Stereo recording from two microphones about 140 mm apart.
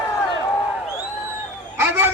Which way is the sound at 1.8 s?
15° right (ahead or behind).